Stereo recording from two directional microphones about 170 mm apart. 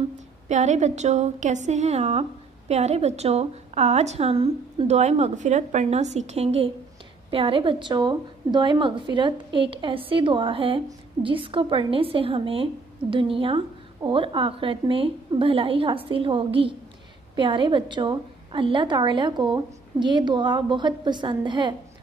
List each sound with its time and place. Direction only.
0.5 s a woman's voice: 45° right (ahead or behind); by 21.7 s 25° right (ahead or behind)